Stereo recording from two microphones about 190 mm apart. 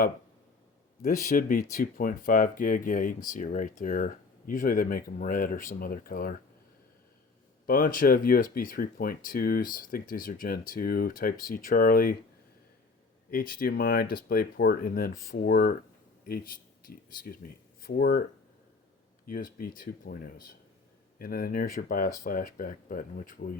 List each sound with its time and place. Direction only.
1.3 s speech: 45° left (ahead or behind)
7.7 s speech: 45° left (ahead or behind)
13.6 s speech: 50° left (ahead or behind)
19.3 s speech: 45° left (ahead or behind)